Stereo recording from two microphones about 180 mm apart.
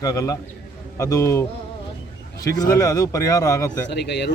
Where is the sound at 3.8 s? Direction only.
70° left (ahead or behind).